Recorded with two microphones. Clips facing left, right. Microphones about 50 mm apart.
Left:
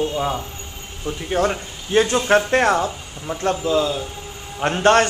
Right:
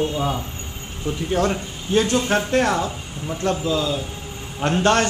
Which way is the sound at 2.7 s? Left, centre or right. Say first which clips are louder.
Left 2 dB; centre.